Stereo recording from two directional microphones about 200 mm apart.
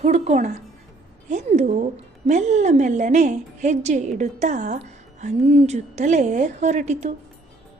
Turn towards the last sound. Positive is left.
turn(degrees=-35)  # may be behind; listen again after turning